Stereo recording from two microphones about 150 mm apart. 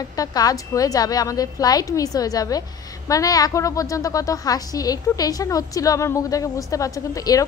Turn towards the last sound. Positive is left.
turn(degrees=25)  # may be behind; listen again after turning